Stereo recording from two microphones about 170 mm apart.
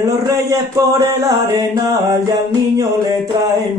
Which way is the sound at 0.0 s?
20° right (ahead or behind).